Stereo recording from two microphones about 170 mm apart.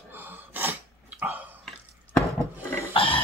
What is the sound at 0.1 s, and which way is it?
Sneeze, 10° right (ahead or behind).